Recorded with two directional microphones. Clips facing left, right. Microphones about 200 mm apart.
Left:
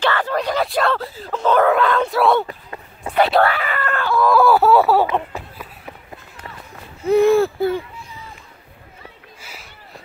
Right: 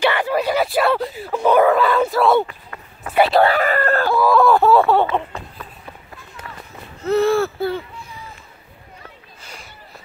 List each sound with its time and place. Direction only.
0.0 s speech: 10° right (ahead or behind)
2.4 s run: 25° left (ahead or behind)
3.2 s speech: centre (ahead or behind)
3.5 s speech: 40° right (ahead or behind)
4.2 s a sound: centre (ahead or behind)
7.0 s speech: 15° left (ahead or behind)
9.4 s a sound: 5° left (ahead or behind)